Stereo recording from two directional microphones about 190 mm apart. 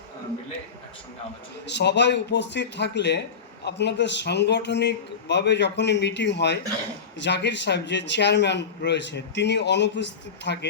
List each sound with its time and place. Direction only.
1.6 s a man's voice: 65° left (ahead or behind)